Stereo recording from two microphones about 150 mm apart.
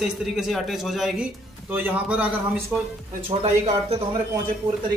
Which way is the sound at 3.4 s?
45° right (ahead or behind).